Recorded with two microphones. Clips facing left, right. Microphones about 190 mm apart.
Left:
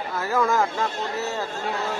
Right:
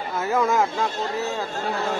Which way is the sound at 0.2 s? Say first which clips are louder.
Right 1 dB; 20° right (ahead or behind).